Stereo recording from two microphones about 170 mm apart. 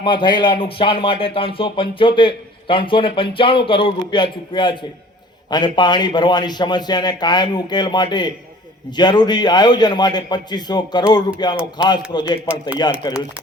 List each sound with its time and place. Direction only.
0.0 s a man's voice: 30° left (ahead or behind)